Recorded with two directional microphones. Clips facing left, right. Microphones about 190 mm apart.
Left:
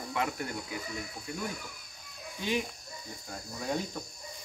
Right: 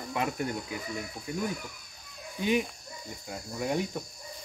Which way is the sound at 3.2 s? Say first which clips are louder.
Right 4 dB; 15° right (ahead or behind).